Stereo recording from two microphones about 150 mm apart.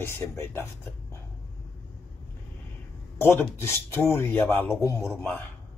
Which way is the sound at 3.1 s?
15° left (ahead or behind).